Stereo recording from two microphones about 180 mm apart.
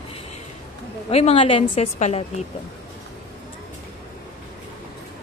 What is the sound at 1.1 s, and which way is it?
A woman's voice, 35° left (ahead or behind).